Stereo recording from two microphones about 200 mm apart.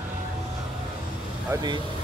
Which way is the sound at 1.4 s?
20° right (ahead or behind).